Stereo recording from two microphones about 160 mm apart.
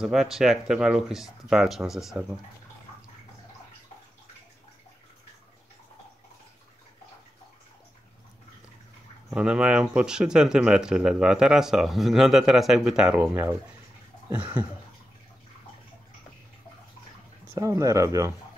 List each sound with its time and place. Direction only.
0.0 s speech: centre (ahead or behind)
9.3 s speech: 5° right (ahead or behind)
13.2 s speech: 15° right (ahead or behind)
17.6 s speech: 20° right (ahead or behind)